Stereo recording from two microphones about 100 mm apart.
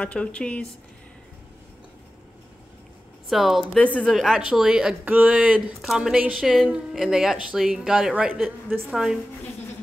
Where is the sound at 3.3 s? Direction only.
Centre (ahead or behind).